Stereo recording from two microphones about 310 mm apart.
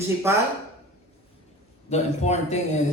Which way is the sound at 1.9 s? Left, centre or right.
Left.